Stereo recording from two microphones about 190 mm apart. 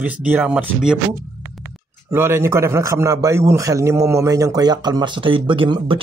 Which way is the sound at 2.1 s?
15° right (ahead or behind).